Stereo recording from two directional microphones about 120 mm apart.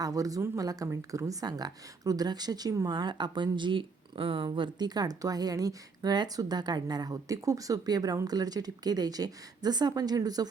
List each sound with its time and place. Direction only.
0.0 s speech: 30° right (ahead or behind)